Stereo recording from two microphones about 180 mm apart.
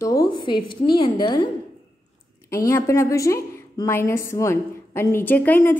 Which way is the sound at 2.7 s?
15° left (ahead or behind).